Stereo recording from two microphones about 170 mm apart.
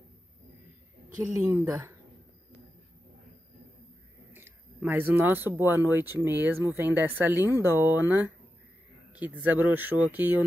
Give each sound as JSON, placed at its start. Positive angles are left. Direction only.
{"t": 1.3, "sound": "speech", "side_deg": -15}
{"t": 4.3, "sound": "speech", "side_deg": -10}